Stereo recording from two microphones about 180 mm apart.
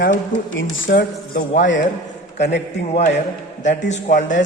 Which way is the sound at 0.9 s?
65° left (ahead or behind).